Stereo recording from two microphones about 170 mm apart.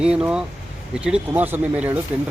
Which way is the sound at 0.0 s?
5° right (ahead or behind).